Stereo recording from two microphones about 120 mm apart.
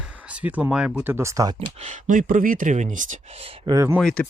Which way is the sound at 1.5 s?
70° right (ahead or behind).